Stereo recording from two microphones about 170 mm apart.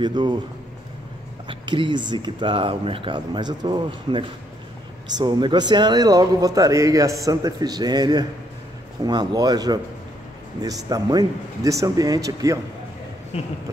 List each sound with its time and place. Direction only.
0.0 s a man's voice: 25° right (ahead or behind)
1.5 s a man's voice: 30° right (ahead or behind)
13.3 s a sound: 35° left (ahead or behind)